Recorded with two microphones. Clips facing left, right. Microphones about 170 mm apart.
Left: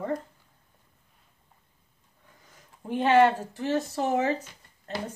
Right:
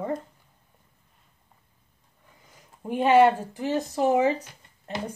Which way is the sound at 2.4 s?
10° right (ahead or behind).